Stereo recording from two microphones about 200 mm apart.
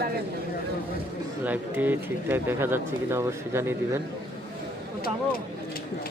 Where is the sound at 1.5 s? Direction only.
10° right (ahead or behind).